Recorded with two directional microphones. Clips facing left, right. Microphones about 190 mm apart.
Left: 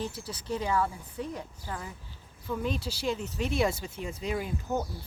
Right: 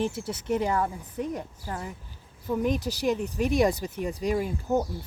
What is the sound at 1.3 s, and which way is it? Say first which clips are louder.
Speech: right 4 dB; 40° right (ahead or behind).